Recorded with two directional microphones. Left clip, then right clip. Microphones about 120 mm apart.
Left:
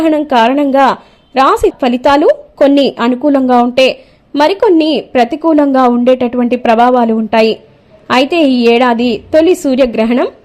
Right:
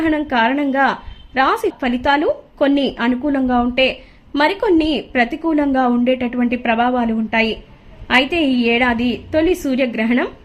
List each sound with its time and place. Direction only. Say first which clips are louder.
0.0 s a woman's voice: left 7 dB; 40° left (ahead or behind)
4.4 s a woman's voice: left 7 dB; 35° left (ahead or behind)